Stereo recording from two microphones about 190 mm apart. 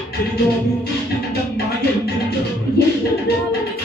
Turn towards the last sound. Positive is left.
turn(degrees=60)  # may be behind; listen again after turning